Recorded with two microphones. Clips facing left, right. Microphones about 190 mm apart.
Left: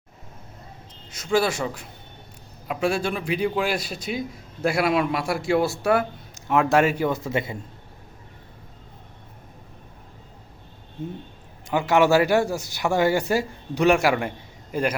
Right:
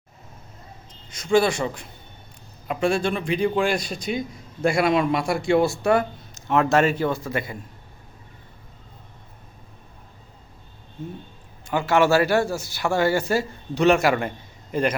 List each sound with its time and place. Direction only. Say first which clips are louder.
1.1 s a man's voice: right 3 dB; 5° left (ahead or behind)
7.2 s a man's voice: left 2 dB; 25° left (ahead or behind)
11.7 s speech: even; 15° left (ahead or behind)